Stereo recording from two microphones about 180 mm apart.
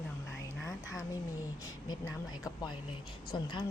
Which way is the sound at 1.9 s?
20° left (ahead or behind).